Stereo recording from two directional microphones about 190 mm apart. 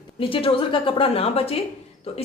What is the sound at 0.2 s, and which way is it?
A woman's voice, 25° left (ahead or behind).